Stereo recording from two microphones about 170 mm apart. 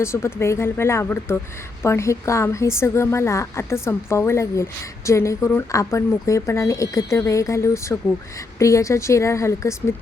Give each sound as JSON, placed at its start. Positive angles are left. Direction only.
{"t": 0.0, "sound": "a woman's voice", "side_deg": 15}